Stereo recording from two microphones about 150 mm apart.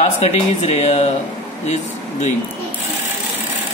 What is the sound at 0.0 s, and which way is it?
Speech, 45° left (ahead or behind).